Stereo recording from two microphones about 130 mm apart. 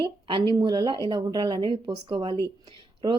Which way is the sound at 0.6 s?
35° right (ahead or behind).